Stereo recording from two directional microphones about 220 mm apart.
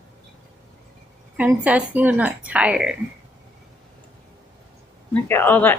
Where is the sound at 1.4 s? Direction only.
5° right (ahead or behind).